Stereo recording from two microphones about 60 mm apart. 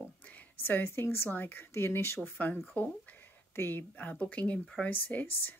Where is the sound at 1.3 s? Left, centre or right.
Left.